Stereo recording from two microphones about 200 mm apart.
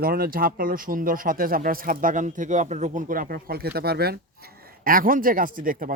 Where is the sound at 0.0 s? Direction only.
50° right (ahead or behind).